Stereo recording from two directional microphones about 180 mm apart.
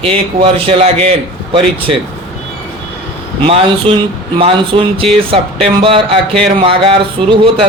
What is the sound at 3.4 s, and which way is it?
Speech, 30° right (ahead or behind).